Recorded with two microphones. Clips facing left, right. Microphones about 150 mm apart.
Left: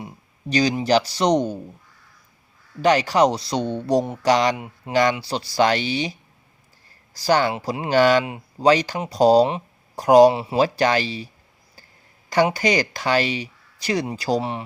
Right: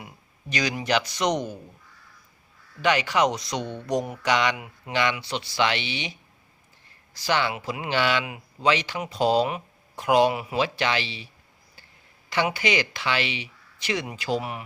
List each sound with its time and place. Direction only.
0.5 s speech: 30° left (ahead or behind)
2.8 s speech: 35° left (ahead or behind)
12.3 s speech: 40° left (ahead or behind)